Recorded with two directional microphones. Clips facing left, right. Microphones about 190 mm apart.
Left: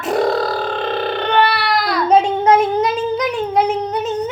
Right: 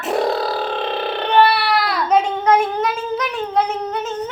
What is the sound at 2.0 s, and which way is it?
Child singing, 30° left (ahead or behind).